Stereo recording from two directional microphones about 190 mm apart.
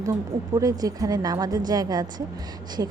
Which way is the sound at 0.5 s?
20° right (ahead or behind).